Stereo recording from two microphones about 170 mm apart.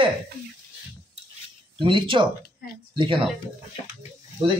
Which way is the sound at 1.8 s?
30° right (ahead or behind).